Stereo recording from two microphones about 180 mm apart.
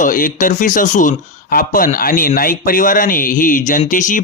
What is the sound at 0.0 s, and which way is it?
Speech, 50° left (ahead or behind).